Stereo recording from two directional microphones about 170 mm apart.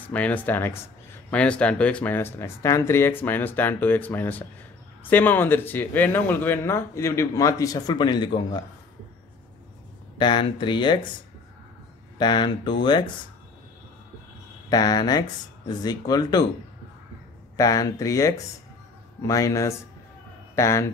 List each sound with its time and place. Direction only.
0.1 s speech: 10° left (ahead or behind); by 8.6 s 25° left (ahead or behind)
10.1 s speech: 30° left (ahead or behind)
12.2 s speech: 25° left (ahead or behind)
14.7 s speech: 25° left (ahead or behind)
17.6 s speech: 20° left (ahead or behind)